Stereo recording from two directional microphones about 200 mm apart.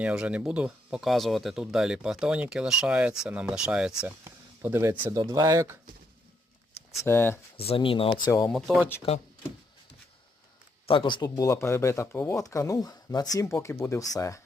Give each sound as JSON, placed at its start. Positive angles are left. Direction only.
{"t": 0.0, "sound": "speech", "side_deg": -5}
{"t": 7.0, "sound": "speech", "side_deg": 10}
{"t": 7.5, "sound": "speech", "side_deg": 30}
{"t": 8.3, "sound": "speech", "side_deg": 10}
{"t": 8.5, "sound": "speech", "side_deg": 0}
{"t": 10.8, "sound": "speech", "side_deg": 25}